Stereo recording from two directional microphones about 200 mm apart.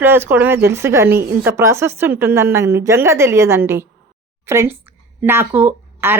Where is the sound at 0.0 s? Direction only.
10° right (ahead or behind).